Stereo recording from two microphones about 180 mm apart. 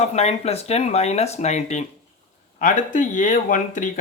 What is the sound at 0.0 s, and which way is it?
Speech, 35° left (ahead or behind).